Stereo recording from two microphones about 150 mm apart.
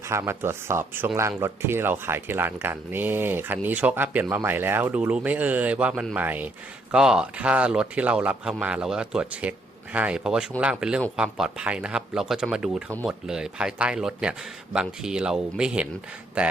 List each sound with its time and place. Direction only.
0.1 s speech: 15° right (ahead or behind)